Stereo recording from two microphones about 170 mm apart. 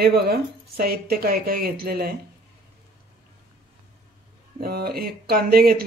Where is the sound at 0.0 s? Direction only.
65° right (ahead or behind).